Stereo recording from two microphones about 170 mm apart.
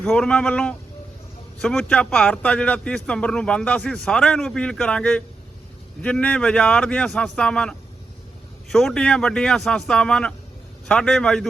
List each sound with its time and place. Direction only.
0.0 s speech: 5° left (ahead or behind)